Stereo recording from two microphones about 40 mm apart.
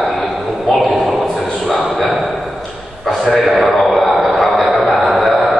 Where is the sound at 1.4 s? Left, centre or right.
Centre.